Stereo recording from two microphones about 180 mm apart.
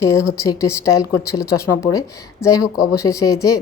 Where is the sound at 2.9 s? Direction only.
20° left (ahead or behind).